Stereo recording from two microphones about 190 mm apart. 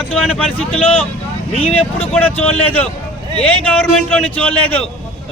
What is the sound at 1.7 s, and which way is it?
Speech, 30° left (ahead or behind).